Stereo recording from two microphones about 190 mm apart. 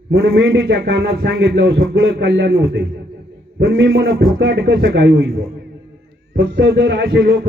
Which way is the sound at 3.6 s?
90° right.